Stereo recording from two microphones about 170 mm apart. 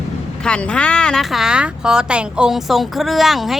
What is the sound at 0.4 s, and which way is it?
A woman's voice, 5° left (ahead or behind).